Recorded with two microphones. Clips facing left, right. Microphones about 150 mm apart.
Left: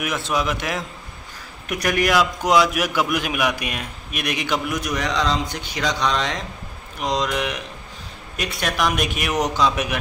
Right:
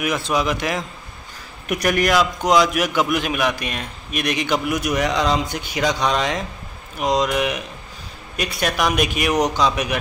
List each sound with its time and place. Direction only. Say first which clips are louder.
0.3 s a man's voice: right 1 dB; centre (ahead or behind)
2.0 s a man's voice: left 1 dB; 5° left (ahead or behind)